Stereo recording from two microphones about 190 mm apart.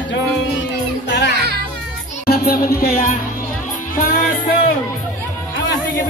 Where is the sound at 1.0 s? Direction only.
65° left (ahead or behind).